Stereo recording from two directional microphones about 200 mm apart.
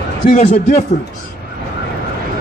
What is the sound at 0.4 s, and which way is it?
Speech, 35° left (ahead or behind).